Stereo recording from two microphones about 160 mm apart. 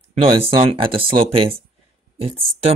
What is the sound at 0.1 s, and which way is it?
Mantra, 35° right (ahead or behind).